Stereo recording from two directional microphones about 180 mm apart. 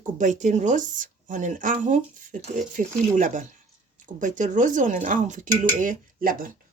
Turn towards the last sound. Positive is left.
turn(degrees=-55)  # may be behind; listen again after turning